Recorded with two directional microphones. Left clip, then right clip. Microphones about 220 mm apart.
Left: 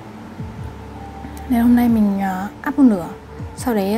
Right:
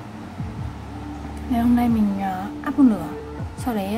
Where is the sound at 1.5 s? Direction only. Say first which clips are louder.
Left 4 dB; 25° left (ahead or behind).